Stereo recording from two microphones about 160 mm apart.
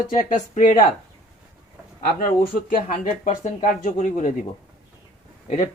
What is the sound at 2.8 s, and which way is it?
Speech, 50° left (ahead or behind).